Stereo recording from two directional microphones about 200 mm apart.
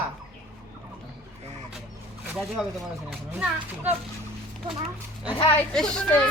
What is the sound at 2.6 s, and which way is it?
Speech, centre (ahead or behind).